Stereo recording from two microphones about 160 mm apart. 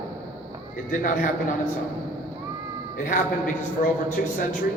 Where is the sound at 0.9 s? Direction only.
55° left (ahead or behind).